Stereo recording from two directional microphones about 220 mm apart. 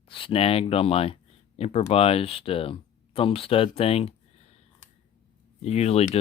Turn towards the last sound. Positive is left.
turn(degrees=30)  # may be behind; listen again after turning